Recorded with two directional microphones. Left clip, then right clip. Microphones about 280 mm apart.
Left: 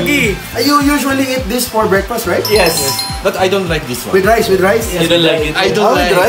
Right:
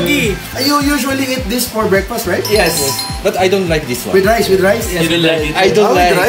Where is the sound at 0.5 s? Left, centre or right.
Centre.